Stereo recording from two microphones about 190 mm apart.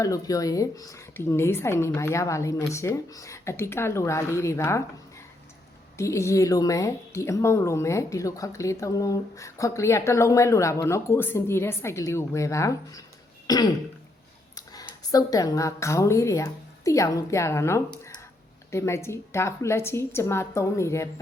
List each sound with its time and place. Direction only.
0.0 s a woman's voice: 20° left (ahead or behind)
6.0 s a woman's voice: 15° left (ahead or behind)
13.5 s throat clearing: 20° left (ahead or behind)
14.5 s a woman's voice: 20° left (ahead or behind)